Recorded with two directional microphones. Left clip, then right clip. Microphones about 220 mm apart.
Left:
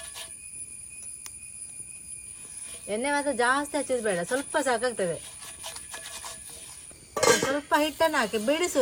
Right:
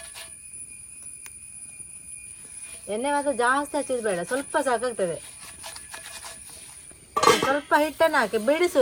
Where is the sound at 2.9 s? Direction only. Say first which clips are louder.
Right 2 dB; 20° right (ahead or behind).